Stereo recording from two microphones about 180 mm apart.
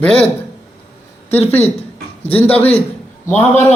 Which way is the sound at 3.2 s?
10° left (ahead or behind).